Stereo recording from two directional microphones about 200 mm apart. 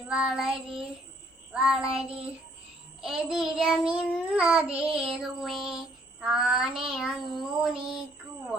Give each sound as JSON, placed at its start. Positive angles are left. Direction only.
{"t": 0.1, "sound": "child singing", "side_deg": -5}
{"t": 3.0, "sound": "child singing", "side_deg": 0}